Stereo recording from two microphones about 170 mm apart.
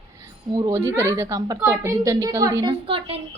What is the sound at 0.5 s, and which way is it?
A woman's voice, 20° right (ahead or behind).